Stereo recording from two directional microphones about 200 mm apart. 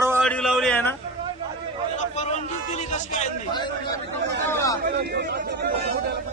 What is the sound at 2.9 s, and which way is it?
Music, 35° left (ahead or behind).